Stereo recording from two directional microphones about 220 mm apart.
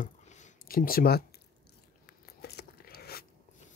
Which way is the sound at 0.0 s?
35° left (ahead or behind).